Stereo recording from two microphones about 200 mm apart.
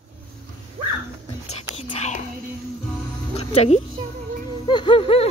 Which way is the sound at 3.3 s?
30° left (ahead or behind).